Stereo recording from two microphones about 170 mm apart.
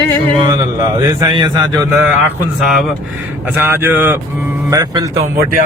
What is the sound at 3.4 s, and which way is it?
Speech, 10° right (ahead or behind).